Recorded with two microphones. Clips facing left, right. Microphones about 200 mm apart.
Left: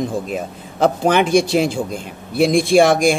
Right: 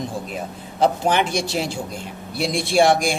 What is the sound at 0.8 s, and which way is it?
Speech, 50° left (ahead or behind).